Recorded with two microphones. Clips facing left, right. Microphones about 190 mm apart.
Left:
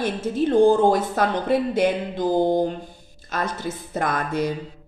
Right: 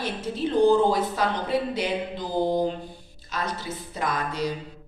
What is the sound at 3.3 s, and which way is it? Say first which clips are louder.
A woman's voice: left 4 dB; 50° left (ahead or behind).